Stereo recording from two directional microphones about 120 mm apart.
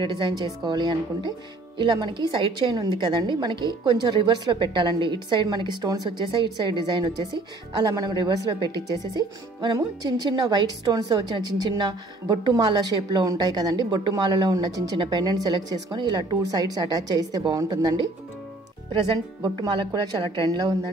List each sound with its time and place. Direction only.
0.0 s a woman's voice: 40° right (ahead or behind)
19.4 s a woman's voice: 35° right (ahead or behind)